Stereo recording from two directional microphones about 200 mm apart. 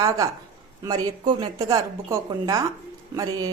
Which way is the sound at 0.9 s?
20° right (ahead or behind).